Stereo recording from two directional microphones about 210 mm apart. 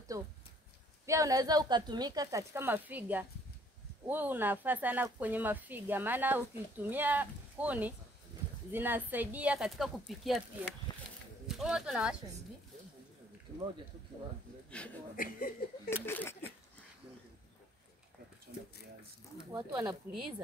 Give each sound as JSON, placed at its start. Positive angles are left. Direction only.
{"t": 0.1, "sound": "speech", "side_deg": -15}
{"t": 11.4, "sound": "speech", "side_deg": 0}
{"t": 14.8, "sound": "speech", "side_deg": 5}
{"t": 15.1, "sound": "speech", "side_deg": 40}
{"t": 16.1, "sound": "speech", "side_deg": 10}
{"t": 19.7, "sound": "speech", "side_deg": -10}